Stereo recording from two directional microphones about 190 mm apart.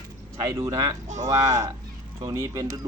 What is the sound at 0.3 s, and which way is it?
Speech, 20° right (ahead or behind).